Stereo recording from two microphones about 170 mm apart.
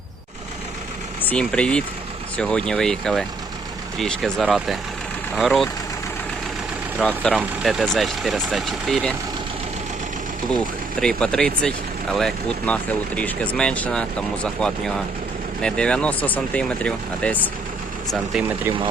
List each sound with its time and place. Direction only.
1.2 s speech: 10° left (ahead or behind)
7.0 s speech: 10° left (ahead or behind)
11.0 s speech: 5° left (ahead or behind)